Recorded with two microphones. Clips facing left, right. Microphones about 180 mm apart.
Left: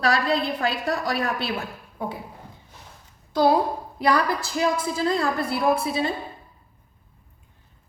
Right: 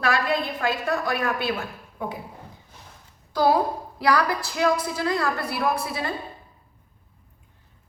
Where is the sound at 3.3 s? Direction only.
20° left (ahead or behind).